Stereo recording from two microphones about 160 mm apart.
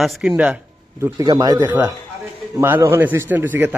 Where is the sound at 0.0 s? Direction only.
Centre (ahead or behind); by 1.6 s 25° right (ahead or behind).